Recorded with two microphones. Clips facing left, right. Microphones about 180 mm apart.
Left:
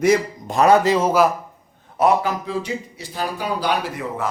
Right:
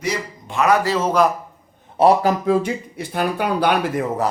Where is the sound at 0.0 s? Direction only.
45° left (ahead or behind).